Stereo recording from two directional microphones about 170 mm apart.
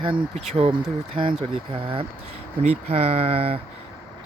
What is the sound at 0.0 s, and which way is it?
Speech, 35° right (ahead or behind).